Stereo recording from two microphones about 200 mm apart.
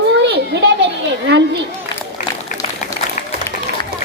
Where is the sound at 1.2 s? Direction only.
55° right (ahead or behind).